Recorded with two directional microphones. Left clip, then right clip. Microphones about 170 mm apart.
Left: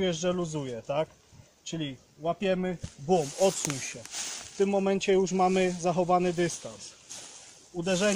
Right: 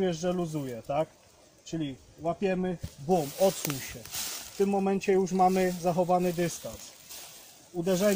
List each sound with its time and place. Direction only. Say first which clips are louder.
0.0 s speech: left 1 dB; 30° left (ahead or behind)
1.6 s speech: even; 25° left (ahead or behind)
4.6 s speech: left 1 dB; 40° left (ahead or behind)
7.8 s speech: even; 25° left (ahead or behind)